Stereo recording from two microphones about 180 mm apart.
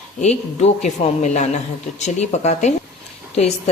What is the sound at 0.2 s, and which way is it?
A woman's voice, 40° left (ahead or behind).